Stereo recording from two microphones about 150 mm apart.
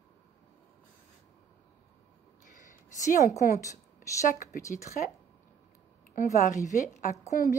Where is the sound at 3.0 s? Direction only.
55° left (ahead or behind).